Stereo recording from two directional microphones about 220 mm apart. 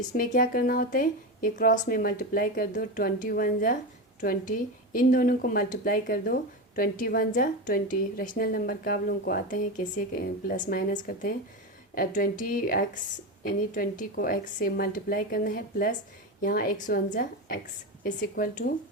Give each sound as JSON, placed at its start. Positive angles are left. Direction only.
{"t": 0.1, "sound": "a woman's voice", "side_deg": 40}